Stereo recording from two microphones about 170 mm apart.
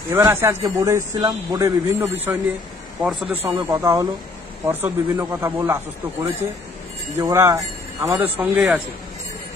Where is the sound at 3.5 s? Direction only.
25° right (ahead or behind).